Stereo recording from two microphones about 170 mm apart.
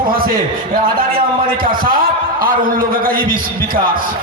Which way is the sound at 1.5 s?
55° right (ahead or behind).